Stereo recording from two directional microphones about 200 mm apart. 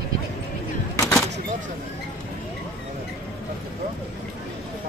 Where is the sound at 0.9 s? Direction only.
15° left (ahead or behind).